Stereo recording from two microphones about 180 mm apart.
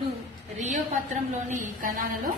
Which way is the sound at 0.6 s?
40° right (ahead or behind).